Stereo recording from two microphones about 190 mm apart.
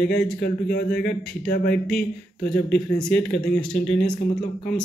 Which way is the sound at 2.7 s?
5° left (ahead or behind).